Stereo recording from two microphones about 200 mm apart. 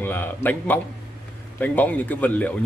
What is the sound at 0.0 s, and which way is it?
A man's voice, 10° left (ahead or behind).